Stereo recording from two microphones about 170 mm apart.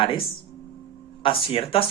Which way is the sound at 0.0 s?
30° left (ahead or behind).